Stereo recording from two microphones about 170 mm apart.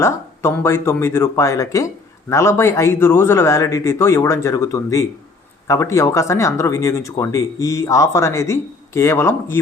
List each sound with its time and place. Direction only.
0.0 s speech: 15° left (ahead or behind)